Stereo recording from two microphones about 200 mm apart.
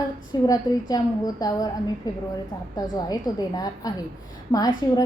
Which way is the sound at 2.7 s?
20° left (ahead or behind).